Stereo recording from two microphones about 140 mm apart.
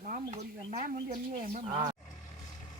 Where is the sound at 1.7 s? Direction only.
30° right (ahead or behind).